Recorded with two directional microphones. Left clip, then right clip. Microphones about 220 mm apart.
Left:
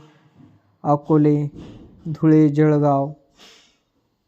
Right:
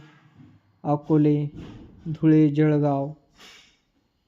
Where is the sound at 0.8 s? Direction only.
15° left (ahead or behind).